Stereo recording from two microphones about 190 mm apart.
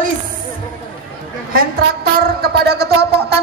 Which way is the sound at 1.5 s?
55° right (ahead or behind).